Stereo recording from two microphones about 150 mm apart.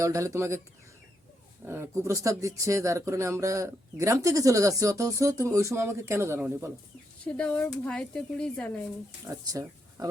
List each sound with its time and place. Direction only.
0.0 s speech: 20° right (ahead or behind)
1.6 s speech: 15° right (ahead or behind)
7.3 s speech: 10° left (ahead or behind)
9.2 s speech: 25° right (ahead or behind)